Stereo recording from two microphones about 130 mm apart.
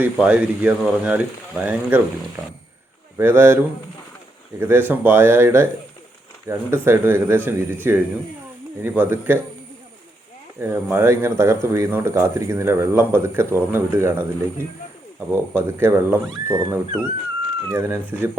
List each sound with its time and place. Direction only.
0.0 s speech: 10° right (ahead or behind)
4.6 s speech: 15° right (ahead or behind)
10.6 s speech: 15° right (ahead or behind)
15.3 s speech: 15° right (ahead or behind)